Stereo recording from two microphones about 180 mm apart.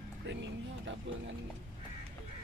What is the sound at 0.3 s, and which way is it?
Music, 85° right.